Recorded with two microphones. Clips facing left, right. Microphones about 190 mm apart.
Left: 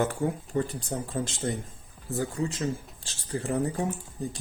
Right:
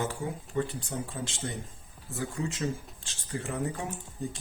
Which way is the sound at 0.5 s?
40° left (ahead or behind).